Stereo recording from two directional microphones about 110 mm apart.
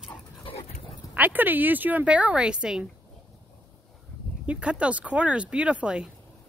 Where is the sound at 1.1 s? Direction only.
15° right (ahead or behind).